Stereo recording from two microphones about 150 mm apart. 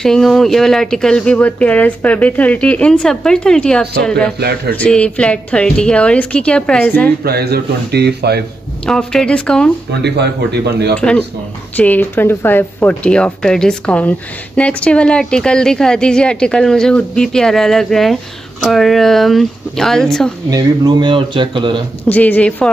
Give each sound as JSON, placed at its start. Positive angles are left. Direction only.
{"t": 0.0, "sound": "speech", "side_deg": 5}
{"t": 4.4, "sound": "speech", "side_deg": -90}
{"t": 4.7, "sound": "a woman's voice", "side_deg": 5}
{"t": 7.2, "sound": "speech", "side_deg": -90}
{"t": 8.8, "sound": "speech", "side_deg": 5}
{"t": 10.0, "sound": "speech", "side_deg": -90}
{"t": 11.0, "sound": "a woman's voice", "side_deg": 5}
{"t": 20.4, "sound": "speech", "side_deg": -25}
{"t": 22.0, "sound": "a woman's voice", "side_deg": 10}